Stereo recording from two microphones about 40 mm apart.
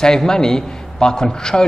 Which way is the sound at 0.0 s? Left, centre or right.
Centre.